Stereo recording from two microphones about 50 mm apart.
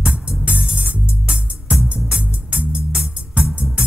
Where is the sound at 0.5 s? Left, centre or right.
Right.